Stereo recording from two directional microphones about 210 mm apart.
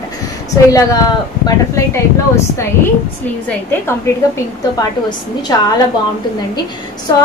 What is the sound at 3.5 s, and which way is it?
Speech, 10° left (ahead or behind).